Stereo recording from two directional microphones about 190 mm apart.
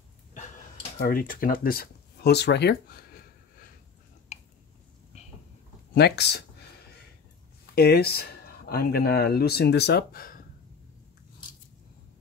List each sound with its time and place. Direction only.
0.9 s speech: 50° left (ahead or behind)
4.3 s a sound: 35° left (ahead or behind)
5.1 s vehicle: 35° left (ahead or behind)
5.9 s speech: 60° left (ahead or behind)
7.7 s speech: 55° left (ahead or behind)